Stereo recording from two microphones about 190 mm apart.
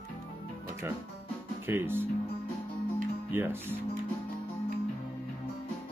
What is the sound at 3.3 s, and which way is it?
Speech, 10° right (ahead or behind).